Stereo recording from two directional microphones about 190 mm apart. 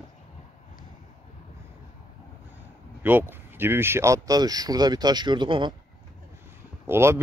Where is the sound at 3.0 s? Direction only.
10° right (ahead or behind).